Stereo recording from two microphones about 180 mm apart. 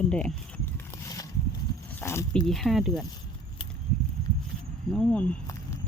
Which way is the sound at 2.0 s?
10° left (ahead or behind).